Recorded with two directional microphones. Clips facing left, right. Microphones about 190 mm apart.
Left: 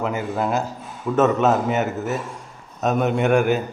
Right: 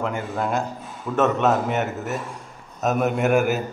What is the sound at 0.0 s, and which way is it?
A man's voice, 5° left (ahead or behind).